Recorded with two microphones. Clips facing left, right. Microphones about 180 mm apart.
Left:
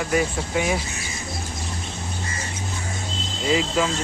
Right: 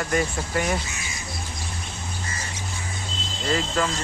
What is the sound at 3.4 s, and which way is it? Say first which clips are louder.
Speech: left 3 dB; 10° left (ahead or behind).